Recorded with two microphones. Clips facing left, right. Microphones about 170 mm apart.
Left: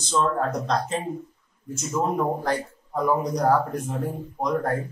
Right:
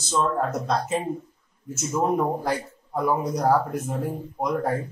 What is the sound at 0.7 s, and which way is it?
A man's voice, 10° right (ahead or behind).